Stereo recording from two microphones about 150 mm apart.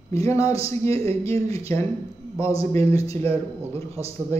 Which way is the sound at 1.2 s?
20° left (ahead or behind).